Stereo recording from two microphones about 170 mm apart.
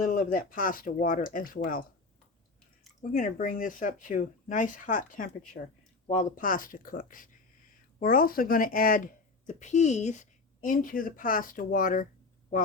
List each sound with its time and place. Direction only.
0.0 s speech: 50° left (ahead or behind)
3.0 s speech: 50° left (ahead or behind)
5.6 s speech: 70° left (ahead or behind)
6.1 s speech: 50° left (ahead or behind)